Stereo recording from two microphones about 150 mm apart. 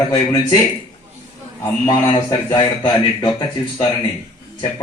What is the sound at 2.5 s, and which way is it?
Speech, 30° left (ahead or behind).